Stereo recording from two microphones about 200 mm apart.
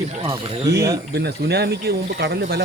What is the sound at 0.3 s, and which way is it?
Speech, 30° right (ahead or behind).